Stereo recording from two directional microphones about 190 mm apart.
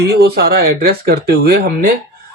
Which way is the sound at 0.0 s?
55° right (ahead or behind).